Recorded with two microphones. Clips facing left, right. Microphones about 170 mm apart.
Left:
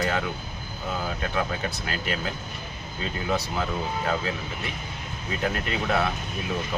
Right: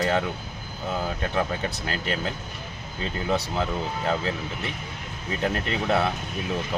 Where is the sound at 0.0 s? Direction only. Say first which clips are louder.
Right 3 dB; 30° right (ahead or behind).